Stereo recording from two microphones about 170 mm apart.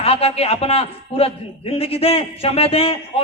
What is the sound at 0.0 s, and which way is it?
A man's voice, 35° left (ahead or behind).